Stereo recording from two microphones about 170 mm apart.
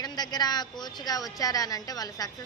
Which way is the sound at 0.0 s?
25° left (ahead or behind).